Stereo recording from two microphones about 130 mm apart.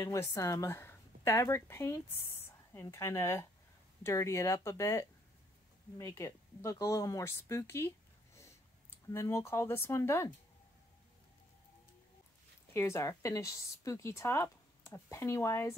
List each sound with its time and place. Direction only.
0.0 s speech: 25° left (ahead or behind)
9.1 s speech: 20° left (ahead or behind)
12.7 s speech: 20° left (ahead or behind)